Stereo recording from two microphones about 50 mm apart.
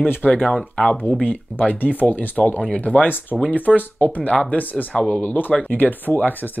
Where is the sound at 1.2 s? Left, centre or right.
Left.